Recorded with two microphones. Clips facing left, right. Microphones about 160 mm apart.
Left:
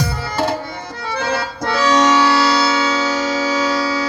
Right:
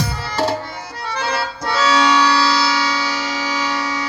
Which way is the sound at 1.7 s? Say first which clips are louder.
Left 2 dB; 50° left (ahead or behind).